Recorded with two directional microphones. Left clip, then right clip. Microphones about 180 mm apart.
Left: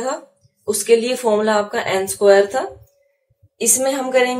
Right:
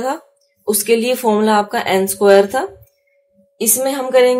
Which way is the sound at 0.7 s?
45° right (ahead or behind).